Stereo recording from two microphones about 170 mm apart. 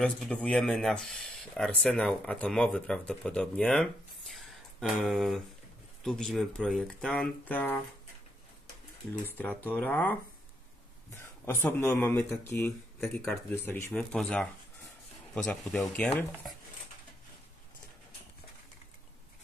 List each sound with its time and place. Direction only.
0.0 s speech: 5° left (ahead or behind)
9.7 s speech: 10° left (ahead or behind)
11.1 s speech: 15° left (ahead or behind)
13.0 s speech: centre (ahead or behind)
13.7 s speech: 15° left (ahead or behind)
16.1 s speech: 20° left (ahead or behind)